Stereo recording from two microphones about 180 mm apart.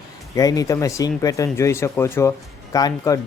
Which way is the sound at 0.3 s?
20° left (ahead or behind).